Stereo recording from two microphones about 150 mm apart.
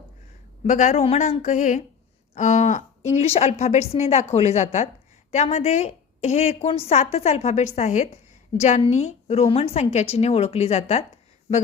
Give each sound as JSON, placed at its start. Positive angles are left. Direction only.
{"t": 0.6, "sound": "a woman's voice", "side_deg": 55}
{"t": 3.2, "sound": "a woman's voice", "side_deg": 45}